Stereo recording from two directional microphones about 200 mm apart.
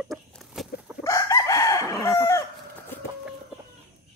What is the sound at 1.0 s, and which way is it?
Chicken, 15° left (ahead or behind).